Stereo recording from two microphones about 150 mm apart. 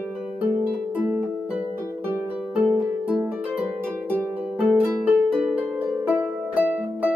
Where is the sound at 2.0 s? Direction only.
15° right (ahead or behind).